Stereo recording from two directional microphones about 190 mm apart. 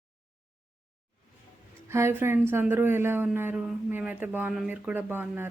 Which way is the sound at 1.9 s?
15° right (ahead or behind).